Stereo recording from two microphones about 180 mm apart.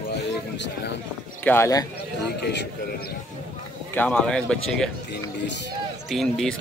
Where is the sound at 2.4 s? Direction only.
70° left (ahead or behind).